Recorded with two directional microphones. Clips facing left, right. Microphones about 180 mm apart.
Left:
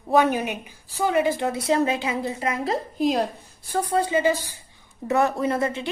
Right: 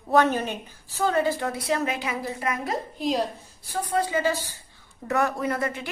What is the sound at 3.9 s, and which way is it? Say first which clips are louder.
A woman's voice: left 3 dB; 25° left (ahead or behind).